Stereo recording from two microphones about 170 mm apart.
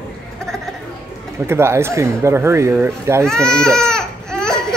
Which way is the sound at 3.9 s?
5° left (ahead or behind).